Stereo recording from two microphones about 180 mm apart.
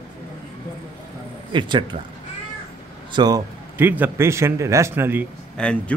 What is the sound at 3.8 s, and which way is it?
Speech, 10° right (ahead or behind).